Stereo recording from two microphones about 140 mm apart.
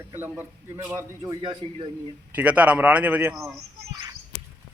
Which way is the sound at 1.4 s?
35° right (ahead or behind).